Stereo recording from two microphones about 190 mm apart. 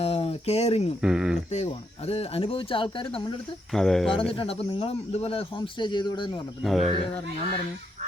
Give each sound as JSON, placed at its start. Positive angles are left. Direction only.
{"t": 0.0, "sound": "a sound", "side_deg": 30}
{"t": 1.0, "sound": "speech", "side_deg": -5}
{"t": 1.5, "sound": "speech", "side_deg": 35}
{"t": 3.7, "sound": "speech", "side_deg": 0}
{"t": 4.1, "sound": "speech", "side_deg": 30}
{"t": 6.6, "sound": "speech", "side_deg": 0}